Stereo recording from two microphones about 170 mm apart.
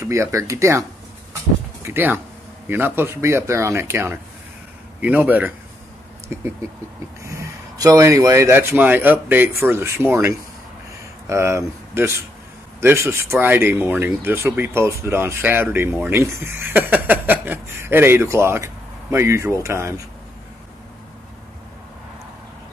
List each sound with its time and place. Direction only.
0.0 s speech: 15° right (ahead or behind)
2.0 s speech: 10° right (ahead or behind)
7.2 s speech: 20° right (ahead or behind)